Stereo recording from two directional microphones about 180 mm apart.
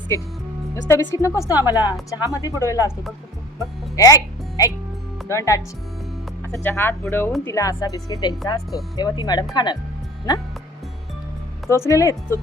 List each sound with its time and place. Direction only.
0.1 s a woman's voice: 15° left (ahead or behind)
3.9 s a woman's voice: 20° left (ahead or behind)
11.7 s a woman's voice: 15° left (ahead or behind)